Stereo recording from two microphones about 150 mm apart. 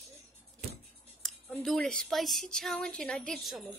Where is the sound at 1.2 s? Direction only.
Centre (ahead or behind).